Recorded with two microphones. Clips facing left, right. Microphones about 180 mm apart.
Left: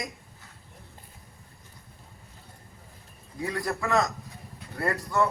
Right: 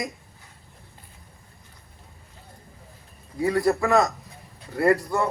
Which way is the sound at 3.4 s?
30° right (ahead or behind).